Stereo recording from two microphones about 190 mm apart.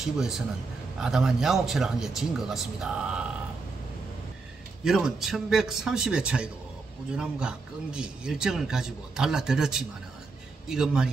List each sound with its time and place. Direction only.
0.0 s speech: centre (ahead or behind)
4.8 s speech: 5° right (ahead or behind)